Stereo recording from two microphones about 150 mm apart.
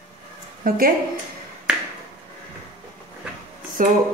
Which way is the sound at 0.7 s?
70° right (ahead or behind).